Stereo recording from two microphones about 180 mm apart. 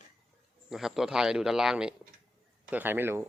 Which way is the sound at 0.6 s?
Centre (ahead or behind).